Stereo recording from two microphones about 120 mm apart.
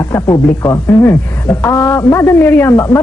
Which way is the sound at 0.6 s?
20° left (ahead or behind).